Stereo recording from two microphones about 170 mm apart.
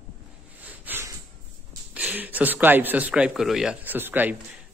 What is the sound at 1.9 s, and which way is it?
Speech, 10° right (ahead or behind).